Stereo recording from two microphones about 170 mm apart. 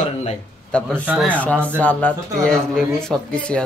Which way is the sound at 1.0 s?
10° right (ahead or behind).